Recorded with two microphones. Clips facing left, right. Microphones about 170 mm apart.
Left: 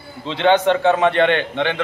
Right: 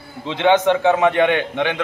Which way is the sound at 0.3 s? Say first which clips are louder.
Even; 15° right (ahead or behind).